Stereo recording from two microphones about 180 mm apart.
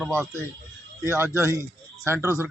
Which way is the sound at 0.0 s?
15° right (ahead or behind).